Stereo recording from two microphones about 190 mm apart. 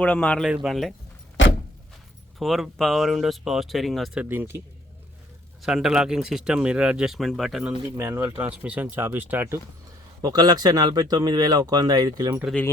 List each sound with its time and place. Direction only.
0.0 s speech: 5° left (ahead or behind)
2.4 s speech: centre (ahead or behind)
5.6 s speech: centre (ahead or behind)
7.9 s speech: 15° right (ahead or behind)
10.2 s speech: 20° right (ahead or behind)
12.5 s speech: 10° left (ahead or behind)